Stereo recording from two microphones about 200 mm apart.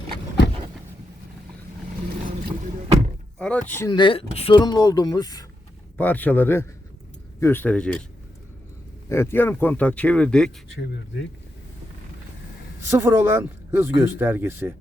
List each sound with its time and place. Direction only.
3.3 s speech: 5° left (ahead or behind)
3.9 s speech: 25° left (ahead or behind); by 8.0 s 5° left (ahead or behind)
9.0 s speech: 15° left (ahead or behind)
10.7 s speech: 65° left (ahead or behind)
12.9 s speech: 10° right (ahead or behind)